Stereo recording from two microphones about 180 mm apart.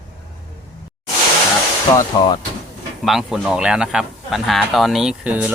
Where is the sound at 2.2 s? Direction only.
25° left (ahead or behind).